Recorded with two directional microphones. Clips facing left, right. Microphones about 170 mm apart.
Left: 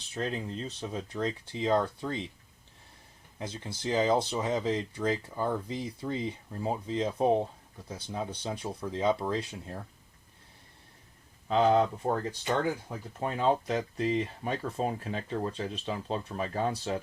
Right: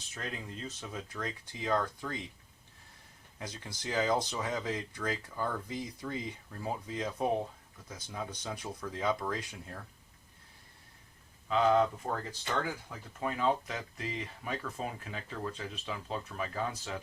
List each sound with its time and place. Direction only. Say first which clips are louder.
0.1 s speech: left 8 dB; 30° left (ahead or behind)
3.3 s speech: left 5 dB; 25° left (ahead or behind)
11.4 s speech: left 3 dB; 35° left (ahead or behind)